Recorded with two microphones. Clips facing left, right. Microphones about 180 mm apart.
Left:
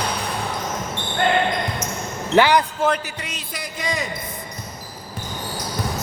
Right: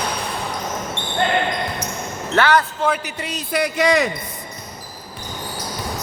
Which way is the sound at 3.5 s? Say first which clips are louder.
Right 11 dB; 70° right (ahead or behind).